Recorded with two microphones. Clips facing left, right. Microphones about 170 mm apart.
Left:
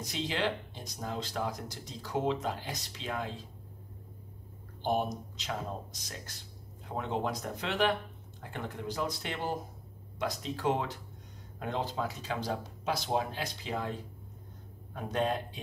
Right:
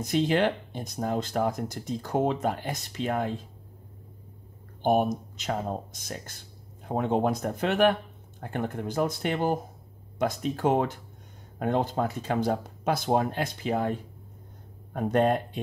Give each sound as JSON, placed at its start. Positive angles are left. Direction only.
{"t": 0.0, "sound": "speech", "side_deg": -50}
{"t": 4.8, "sound": "speech", "side_deg": -50}